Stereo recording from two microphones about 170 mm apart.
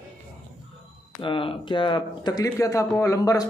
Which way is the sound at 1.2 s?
30° left (ahead or behind).